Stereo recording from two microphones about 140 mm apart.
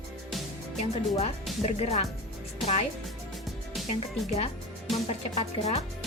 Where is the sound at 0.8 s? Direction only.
50° left (ahead or behind).